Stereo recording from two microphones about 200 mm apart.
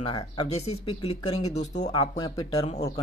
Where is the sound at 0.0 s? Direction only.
25° left (ahead or behind).